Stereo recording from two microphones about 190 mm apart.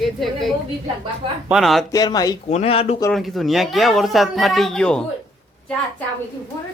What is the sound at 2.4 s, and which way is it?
Speech, 35° left (ahead or behind).